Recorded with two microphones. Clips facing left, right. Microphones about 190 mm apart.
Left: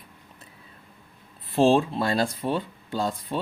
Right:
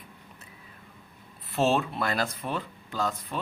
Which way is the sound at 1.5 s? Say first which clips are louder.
Left 6 dB; 30° left (ahead or behind).